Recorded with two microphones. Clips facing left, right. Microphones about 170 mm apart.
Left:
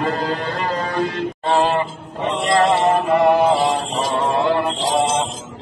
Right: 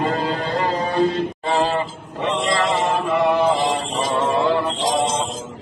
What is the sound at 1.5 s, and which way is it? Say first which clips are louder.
Music: left 3 dB; 50° left (ahead or behind).